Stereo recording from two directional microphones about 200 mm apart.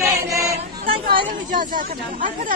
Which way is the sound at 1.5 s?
40° right (ahead or behind).